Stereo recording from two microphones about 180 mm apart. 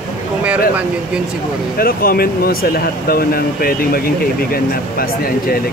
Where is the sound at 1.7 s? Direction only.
55° left (ahead or behind).